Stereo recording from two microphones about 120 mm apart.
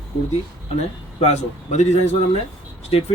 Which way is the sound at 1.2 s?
70° left (ahead or behind).